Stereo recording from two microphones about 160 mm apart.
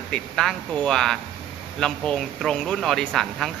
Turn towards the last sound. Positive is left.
turn(degrees=0)  # may be behind; listen again after turning